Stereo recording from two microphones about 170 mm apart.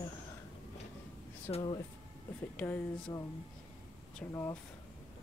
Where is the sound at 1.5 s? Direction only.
20° left (ahead or behind).